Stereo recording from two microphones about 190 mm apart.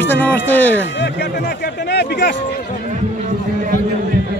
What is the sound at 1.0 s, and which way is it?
Speech, 60° left (ahead or behind).